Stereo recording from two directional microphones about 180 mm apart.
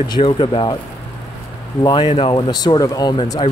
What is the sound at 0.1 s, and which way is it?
Speech, 30° left (ahead or behind).